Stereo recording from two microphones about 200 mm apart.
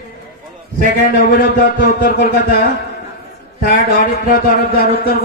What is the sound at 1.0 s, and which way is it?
A man's voice, 45° left (ahead or behind).